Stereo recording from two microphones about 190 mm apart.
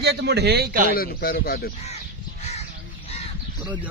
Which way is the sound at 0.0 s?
60° right (ahead or behind).